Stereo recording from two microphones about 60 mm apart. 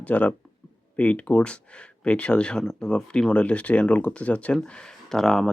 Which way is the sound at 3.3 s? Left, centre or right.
Left.